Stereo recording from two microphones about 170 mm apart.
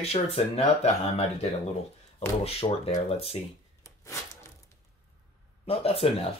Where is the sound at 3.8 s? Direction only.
15° left (ahead or behind).